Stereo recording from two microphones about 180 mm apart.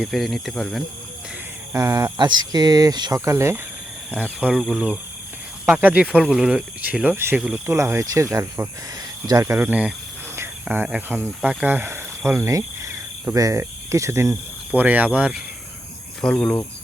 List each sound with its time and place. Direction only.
0.0 s speech: centre (ahead or behind)
1.7 s speech: 15° right (ahead or behind)
7.8 s speech: 15° right (ahead or behind)
12.5 s cricket: 20° right (ahead or behind)
14.8 s speech: 10° right (ahead or behind)
16.2 s speech: 5° left (ahead or behind)